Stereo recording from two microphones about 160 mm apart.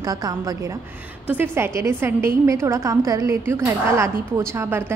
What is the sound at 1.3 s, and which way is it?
A woman's voice, 15° right (ahead or behind).